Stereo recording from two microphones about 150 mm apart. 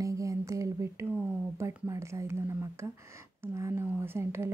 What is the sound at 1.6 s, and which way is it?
Speech, 20° right (ahead or behind).